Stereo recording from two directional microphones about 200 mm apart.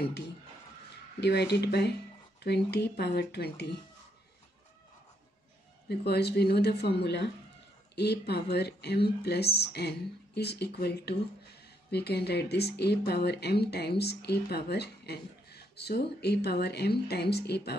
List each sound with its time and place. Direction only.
1.2 s speech: 55° left (ahead or behind)
5.9 s speech: 55° left (ahead or behind)